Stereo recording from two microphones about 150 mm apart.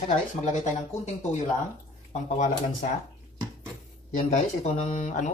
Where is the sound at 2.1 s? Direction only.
50° left (ahead or behind).